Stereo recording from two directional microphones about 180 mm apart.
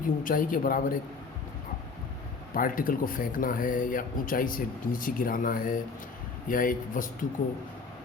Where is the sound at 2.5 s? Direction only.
50° left (ahead or behind).